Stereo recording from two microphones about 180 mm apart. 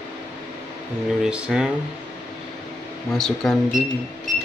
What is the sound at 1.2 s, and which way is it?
Speech, 5° right (ahead or behind).